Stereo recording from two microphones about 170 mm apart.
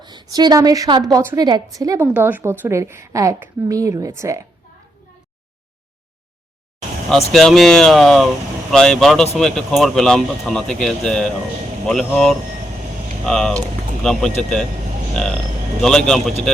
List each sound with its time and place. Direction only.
0.0 s a woman's voice: 25° right (ahead or behind)
2.0 s a woman's voice: 10° right (ahead or behind)
7.3 s speech: centre (ahead or behind)